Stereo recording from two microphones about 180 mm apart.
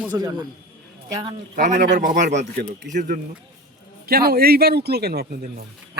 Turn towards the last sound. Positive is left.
turn(degrees=-60)  # may be behind; listen again after turning